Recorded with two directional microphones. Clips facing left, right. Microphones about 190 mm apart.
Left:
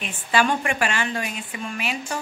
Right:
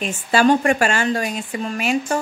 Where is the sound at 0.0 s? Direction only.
40° right (ahead or behind).